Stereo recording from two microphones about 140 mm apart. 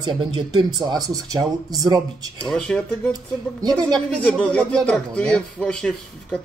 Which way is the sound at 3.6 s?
30° right (ahead or behind).